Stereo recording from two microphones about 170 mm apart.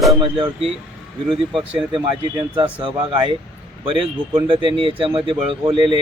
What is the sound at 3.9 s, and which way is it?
Speech, 30° right (ahead or behind).